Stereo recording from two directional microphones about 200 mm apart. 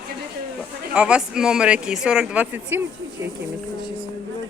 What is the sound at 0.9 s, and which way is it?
Speech, 5° right (ahead or behind).